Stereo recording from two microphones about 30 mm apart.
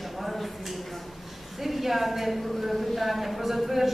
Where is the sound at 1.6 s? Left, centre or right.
Centre.